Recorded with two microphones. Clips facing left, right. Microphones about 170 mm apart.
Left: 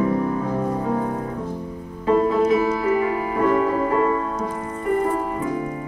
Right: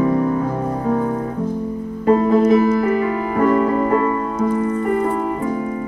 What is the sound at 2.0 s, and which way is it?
Music, 45° right (ahead or behind).